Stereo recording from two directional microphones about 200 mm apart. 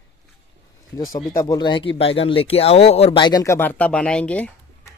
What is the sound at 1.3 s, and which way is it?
Speech, 20° left (ahead or behind).